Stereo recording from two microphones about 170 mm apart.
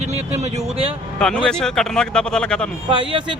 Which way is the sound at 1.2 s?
5° left (ahead or behind).